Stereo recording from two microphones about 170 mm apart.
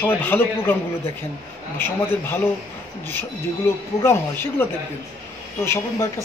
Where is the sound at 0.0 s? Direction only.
10° left (ahead or behind).